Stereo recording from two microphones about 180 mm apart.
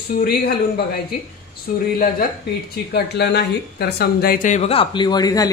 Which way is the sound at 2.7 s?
65° left (ahead or behind).